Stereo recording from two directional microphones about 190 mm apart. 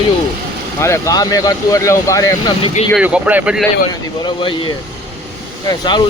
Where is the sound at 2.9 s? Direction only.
5° right (ahead or behind).